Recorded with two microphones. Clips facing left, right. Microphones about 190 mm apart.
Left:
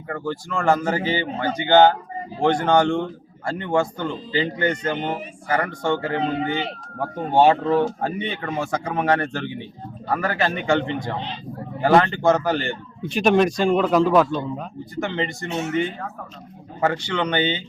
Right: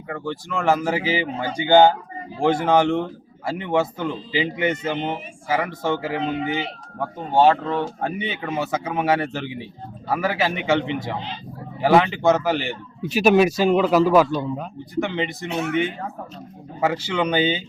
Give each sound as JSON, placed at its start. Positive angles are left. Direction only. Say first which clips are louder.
{"t": 0.1, "sound": "a man's voice", "louder": "left 1 dB", "side_deg": 0}
{"t": 7.3, "sound": "a man's voice", "louder": "left 1 dB", "side_deg": 10}
{"t": 15.4, "sound": "speech", "louder": "right 1 dB", "side_deg": -60}
{"t": 16.8, "sound": "speech", "louder": "right 1 dB", "side_deg": -5}